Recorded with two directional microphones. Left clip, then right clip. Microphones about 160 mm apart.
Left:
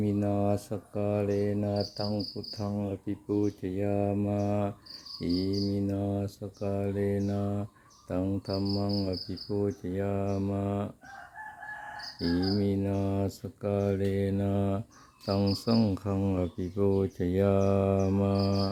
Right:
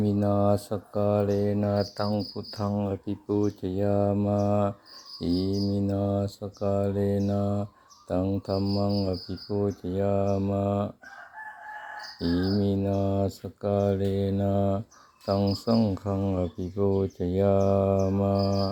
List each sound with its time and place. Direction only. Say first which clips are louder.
0.0 s speech: right 4 dB; 5° right (ahead or behind)
1.5 s mantra: right 4 dB; 10° right (ahead or behind)
5.7 s mantra: right 4 dB; centre (ahead or behind)
12.2 s speech: right 2 dB; centre (ahead or behind); by 18.7 s 20° left (ahead or behind)